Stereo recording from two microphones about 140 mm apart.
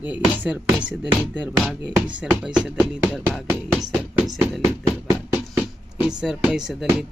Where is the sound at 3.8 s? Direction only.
Centre (ahead or behind).